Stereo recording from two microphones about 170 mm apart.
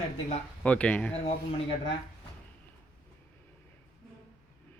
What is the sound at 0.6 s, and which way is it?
Speech, 10° left (ahead or behind).